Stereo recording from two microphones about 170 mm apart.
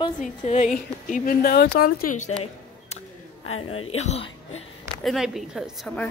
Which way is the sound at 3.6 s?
40° left (ahead or behind).